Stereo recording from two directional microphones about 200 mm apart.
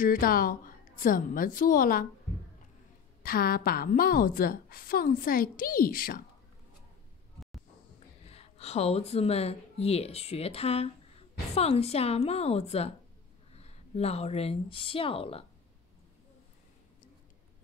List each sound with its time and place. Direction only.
0.0 s a woman's voice: 45° left (ahead or behind)
3.2 s a woman's voice: 45° left (ahead or behind)
8.3 s speech: 30° left (ahead or behind)